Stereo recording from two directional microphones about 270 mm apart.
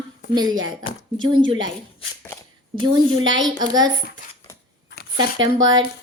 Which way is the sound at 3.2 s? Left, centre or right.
Right.